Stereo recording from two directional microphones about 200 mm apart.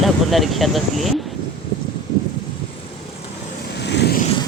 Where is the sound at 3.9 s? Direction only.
55° left (ahead or behind).